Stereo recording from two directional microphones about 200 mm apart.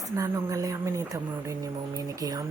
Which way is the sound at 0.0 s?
15° right (ahead or behind).